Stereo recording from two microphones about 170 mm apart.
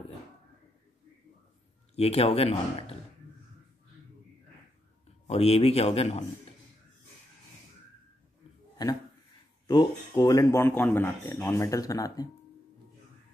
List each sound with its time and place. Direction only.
2.0 s speech: 35° left (ahead or behind)
5.2 s speech: 35° left (ahead or behind)
8.8 s speech: 25° left (ahead or behind)